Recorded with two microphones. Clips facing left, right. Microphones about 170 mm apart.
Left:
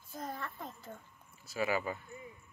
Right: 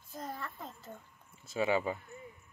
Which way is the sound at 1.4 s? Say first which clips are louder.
Right 3 dB; 25° right (ahead or behind).